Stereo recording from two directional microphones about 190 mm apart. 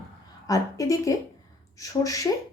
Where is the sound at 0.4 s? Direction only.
20° left (ahead or behind).